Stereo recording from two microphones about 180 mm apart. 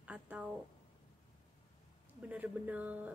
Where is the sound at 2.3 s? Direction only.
10° right (ahead or behind).